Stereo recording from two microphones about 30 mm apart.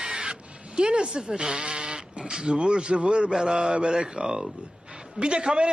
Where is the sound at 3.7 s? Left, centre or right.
Right.